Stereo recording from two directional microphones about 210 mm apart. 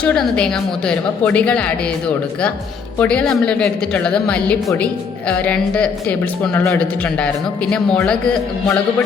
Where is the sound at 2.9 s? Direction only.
5° left (ahead or behind).